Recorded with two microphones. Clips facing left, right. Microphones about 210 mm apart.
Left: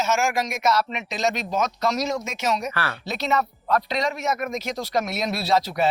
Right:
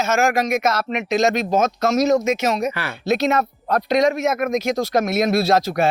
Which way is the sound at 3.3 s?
50° right (ahead or behind).